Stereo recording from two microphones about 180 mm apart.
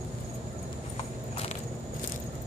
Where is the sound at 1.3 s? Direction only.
35° left (ahead or behind).